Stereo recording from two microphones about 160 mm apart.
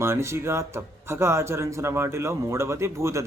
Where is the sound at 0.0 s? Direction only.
15° right (ahead or behind).